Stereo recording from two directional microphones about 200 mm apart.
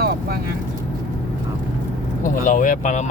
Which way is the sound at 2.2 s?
40° left (ahead or behind).